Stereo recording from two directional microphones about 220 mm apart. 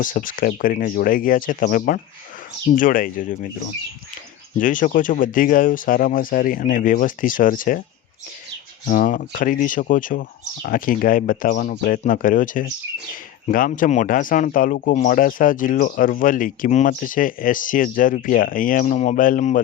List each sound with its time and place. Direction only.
0.0 s speech: 40° left (ahead or behind)
8.9 s speech: 40° left (ahead or behind)